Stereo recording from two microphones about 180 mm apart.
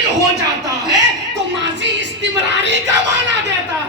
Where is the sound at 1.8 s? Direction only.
80° right.